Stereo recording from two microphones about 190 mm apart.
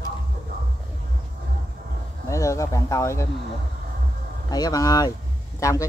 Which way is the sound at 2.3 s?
15° left (ahead or behind).